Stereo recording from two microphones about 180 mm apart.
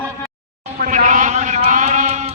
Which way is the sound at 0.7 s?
45° right (ahead or behind).